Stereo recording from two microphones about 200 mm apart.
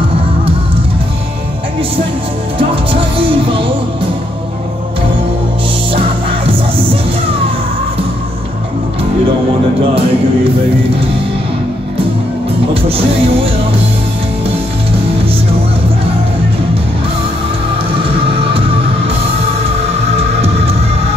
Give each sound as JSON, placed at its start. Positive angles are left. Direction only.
{"t": 2.7, "sound": "music", "side_deg": -25}
{"t": 12.8, "sound": "music", "side_deg": -30}